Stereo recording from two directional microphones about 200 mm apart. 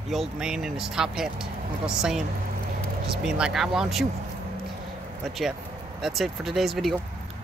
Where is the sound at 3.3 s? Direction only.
5° right (ahead or behind).